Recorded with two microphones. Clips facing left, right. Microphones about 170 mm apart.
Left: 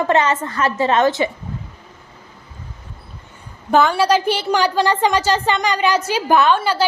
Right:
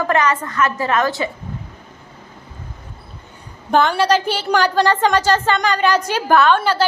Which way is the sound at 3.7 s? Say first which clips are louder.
Left 1 dB; 5° left (ahead or behind).